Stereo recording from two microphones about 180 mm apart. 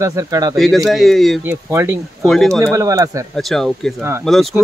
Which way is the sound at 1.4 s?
15° right (ahead or behind).